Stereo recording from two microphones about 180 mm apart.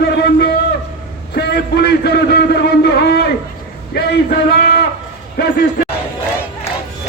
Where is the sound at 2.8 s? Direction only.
65° left (ahead or behind).